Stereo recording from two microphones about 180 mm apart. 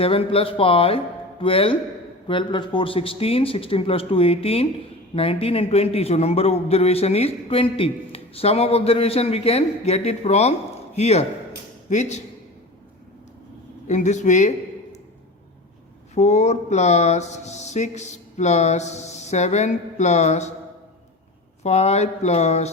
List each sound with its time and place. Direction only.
0.0 s a man's voice: 30° left (ahead or behind)
13.8 s a man's voice: 40° left (ahead or behind)
16.1 s a man's voice: 40° left (ahead or behind)
21.6 s a man's voice: 40° left (ahead or behind)